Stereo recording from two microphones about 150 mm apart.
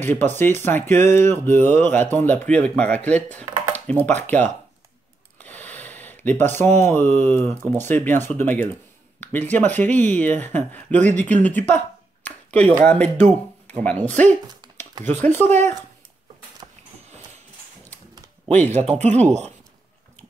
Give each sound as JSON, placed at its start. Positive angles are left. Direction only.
{"t": 0.0, "sound": "speech", "side_deg": 15}
{"t": 5.4, "sound": "a sound", "side_deg": 10}
{"t": 6.8, "sound": "speech", "side_deg": 15}
{"t": 15.4, "sound": "speech", "side_deg": -50}
{"t": 16.6, "sound": "a sound", "side_deg": -30}
{"t": 18.9, "sound": "speech", "side_deg": -50}